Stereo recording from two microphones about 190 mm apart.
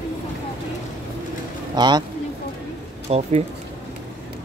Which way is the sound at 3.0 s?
35° right (ahead or behind).